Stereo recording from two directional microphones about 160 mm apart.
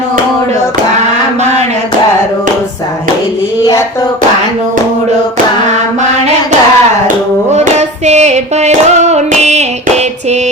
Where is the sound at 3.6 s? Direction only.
25° left (ahead or behind).